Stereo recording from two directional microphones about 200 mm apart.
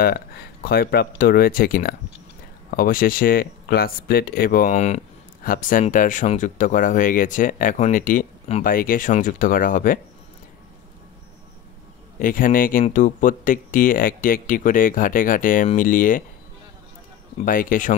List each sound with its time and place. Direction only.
0.0 s speech: 50° left (ahead or behind)
12.2 s speech: 45° left (ahead or behind)
17.5 s speech: 45° left (ahead or behind)